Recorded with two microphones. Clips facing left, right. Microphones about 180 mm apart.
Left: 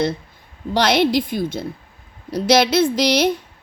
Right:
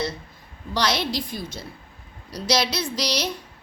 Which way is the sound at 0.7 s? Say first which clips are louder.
Left 8 dB; 55° left (ahead or behind).